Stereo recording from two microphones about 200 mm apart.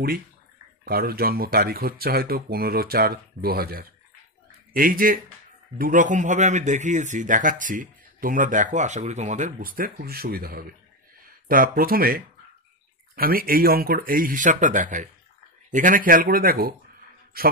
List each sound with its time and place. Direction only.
0.8 s a man's voice: 50° right (ahead or behind)